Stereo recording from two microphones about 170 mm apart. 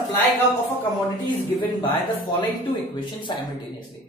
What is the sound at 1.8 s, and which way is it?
Speech, 25° left (ahead or behind).